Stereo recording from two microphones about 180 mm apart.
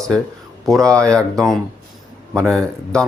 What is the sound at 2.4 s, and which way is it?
Speech, 15° right (ahead or behind).